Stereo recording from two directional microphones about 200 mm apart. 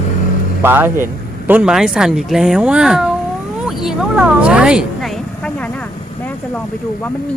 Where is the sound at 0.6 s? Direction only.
10° right (ahead or behind).